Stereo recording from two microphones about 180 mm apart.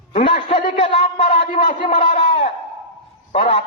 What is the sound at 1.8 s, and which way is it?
A man's voice, 35° left (ahead or behind).